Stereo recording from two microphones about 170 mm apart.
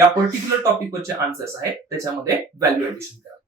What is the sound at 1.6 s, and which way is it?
Speech, 15° right (ahead or behind).